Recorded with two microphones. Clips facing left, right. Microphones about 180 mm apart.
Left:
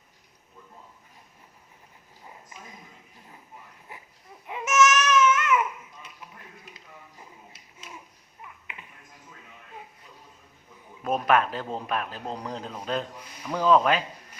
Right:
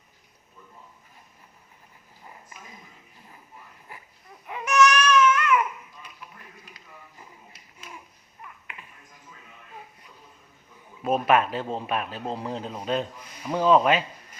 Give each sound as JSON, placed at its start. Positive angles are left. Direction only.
{"t": 4.4, "sound": "baby cry", "side_deg": 20}
{"t": 11.0, "sound": "a man's voice", "side_deg": -5}